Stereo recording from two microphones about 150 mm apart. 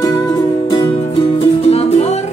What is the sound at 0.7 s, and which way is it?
Music, 30° left (ahead or behind).